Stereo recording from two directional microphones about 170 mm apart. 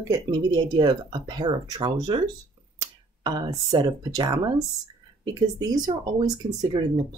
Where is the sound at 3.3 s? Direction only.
25° right (ahead or behind).